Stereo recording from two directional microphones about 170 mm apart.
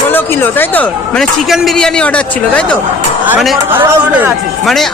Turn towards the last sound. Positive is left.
turn(degrees=0)  # may be behind; listen again after turning